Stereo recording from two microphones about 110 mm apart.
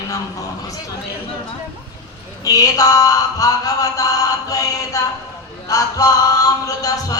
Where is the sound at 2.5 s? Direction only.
35° left (ahead or behind).